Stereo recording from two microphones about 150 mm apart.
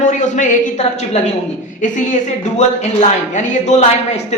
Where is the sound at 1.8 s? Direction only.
55° left (ahead or behind).